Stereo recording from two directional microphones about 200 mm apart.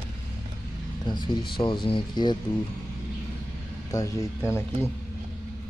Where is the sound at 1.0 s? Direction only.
20° left (ahead or behind).